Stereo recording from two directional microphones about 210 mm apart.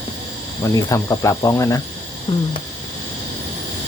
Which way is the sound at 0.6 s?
15° left (ahead or behind).